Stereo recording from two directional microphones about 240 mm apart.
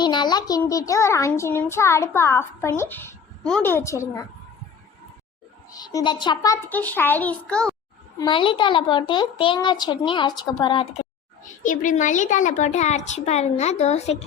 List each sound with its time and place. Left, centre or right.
0.0 s a child's voice: centre
5.7 s a child's voice: centre
8.2 s speech: centre
11.6 s a child's voice: left